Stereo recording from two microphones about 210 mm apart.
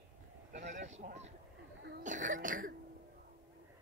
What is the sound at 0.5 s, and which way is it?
Speech, 35° right (ahead or behind).